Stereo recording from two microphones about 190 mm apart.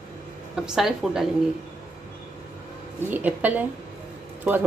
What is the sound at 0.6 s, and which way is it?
Speech, 5° right (ahead or behind).